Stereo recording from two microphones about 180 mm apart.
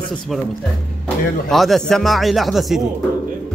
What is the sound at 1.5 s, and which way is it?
Speech, centre (ahead or behind).